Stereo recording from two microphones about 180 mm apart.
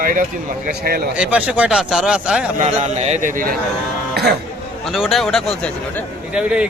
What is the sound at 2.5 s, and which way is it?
A man's voice, 40° right (ahead or behind).